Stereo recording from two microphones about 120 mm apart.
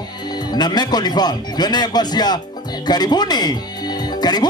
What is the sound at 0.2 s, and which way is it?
Speech, 35° left (ahead or behind).